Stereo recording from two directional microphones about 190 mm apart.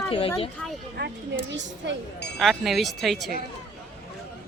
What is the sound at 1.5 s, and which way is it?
Speech, 70° right (ahead or behind).